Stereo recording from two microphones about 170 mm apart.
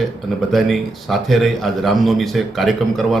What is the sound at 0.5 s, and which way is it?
A man's voice, centre (ahead or behind).